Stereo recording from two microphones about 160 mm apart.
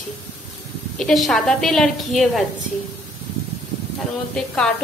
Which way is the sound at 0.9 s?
Centre (ahead or behind).